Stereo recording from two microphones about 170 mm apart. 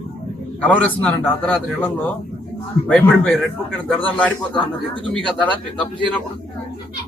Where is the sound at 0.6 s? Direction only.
10° left (ahead or behind).